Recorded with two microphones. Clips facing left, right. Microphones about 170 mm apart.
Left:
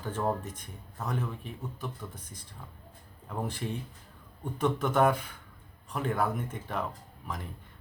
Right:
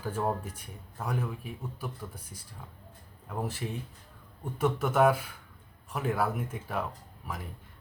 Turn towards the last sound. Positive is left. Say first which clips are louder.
# left 1 dB
turn(degrees=-5)  # may be behind; listen again after turning